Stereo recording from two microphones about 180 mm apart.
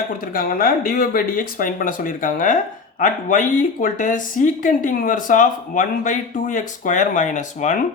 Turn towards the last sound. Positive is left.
turn(degrees=45)  # may be behind; listen again after turning